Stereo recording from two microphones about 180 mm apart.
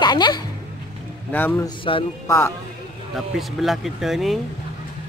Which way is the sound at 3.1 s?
Centre (ahead or behind).